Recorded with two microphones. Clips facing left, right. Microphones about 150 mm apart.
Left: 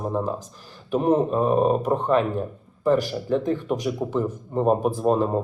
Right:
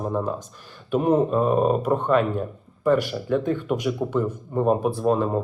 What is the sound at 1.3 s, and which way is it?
Speech, 5° left (ahead or behind).